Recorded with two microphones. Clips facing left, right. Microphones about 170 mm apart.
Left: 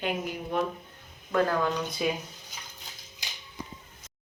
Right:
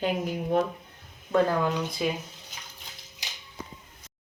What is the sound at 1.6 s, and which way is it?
Speech, 5° right (ahead or behind).